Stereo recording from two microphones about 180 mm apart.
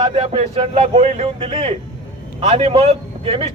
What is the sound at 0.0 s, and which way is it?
A man's voice, 35° right (ahead or behind).